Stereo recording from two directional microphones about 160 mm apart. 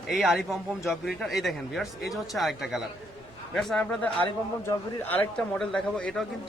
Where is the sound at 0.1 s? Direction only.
5° right (ahead or behind).